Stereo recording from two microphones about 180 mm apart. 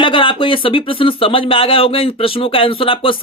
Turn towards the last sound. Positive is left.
turn(degrees=30)  # may be behind; listen again after turning